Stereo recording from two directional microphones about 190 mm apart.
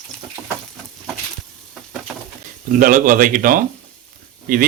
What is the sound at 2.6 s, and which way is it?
Speech, 45° right (ahead or behind).